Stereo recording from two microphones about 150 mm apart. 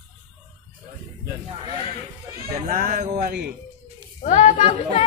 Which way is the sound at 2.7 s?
85° right.